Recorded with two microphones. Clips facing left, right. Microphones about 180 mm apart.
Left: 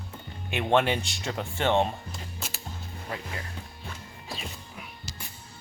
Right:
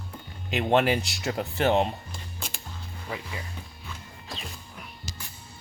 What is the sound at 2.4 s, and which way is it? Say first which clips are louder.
Music: right 1 dB; 5° left (ahead or behind).